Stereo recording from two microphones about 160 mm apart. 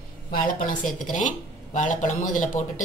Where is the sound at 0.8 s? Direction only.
Centre (ahead or behind).